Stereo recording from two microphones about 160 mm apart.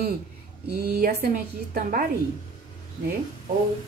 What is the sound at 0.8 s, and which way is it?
A woman's voice, 70° right (ahead or behind).